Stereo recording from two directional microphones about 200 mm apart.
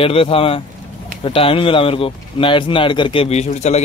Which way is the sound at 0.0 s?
30° left (ahead or behind).